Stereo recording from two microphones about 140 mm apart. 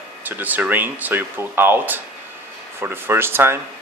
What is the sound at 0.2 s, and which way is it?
Speech, 10° right (ahead or behind).